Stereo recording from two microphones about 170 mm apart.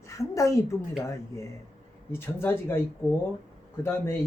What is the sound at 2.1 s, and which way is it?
Speech, 15° left (ahead or behind).